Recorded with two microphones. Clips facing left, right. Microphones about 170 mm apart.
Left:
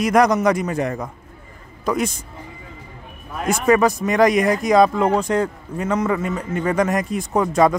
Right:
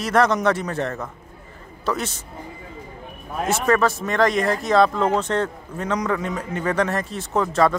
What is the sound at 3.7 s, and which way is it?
Speech, 15° left (ahead or behind).